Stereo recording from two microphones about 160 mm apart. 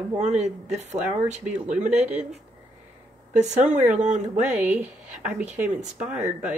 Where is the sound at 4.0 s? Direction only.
50° right (ahead or behind).